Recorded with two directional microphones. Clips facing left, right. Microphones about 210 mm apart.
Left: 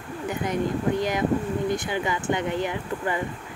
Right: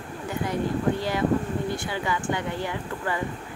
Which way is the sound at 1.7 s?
20° left (ahead or behind).